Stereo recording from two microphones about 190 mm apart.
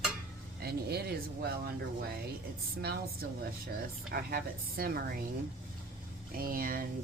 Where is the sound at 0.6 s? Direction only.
55° right (ahead or behind).